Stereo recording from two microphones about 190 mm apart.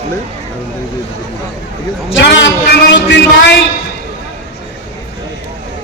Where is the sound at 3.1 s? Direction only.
65° left (ahead or behind).